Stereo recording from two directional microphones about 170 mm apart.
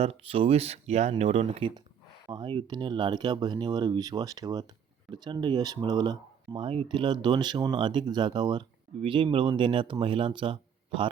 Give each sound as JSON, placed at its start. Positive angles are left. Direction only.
{"t": 0.0, "sound": "speech", "side_deg": -35}